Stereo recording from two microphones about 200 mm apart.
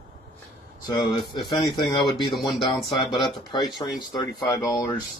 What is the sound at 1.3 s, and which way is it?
Speech, 20° left (ahead or behind).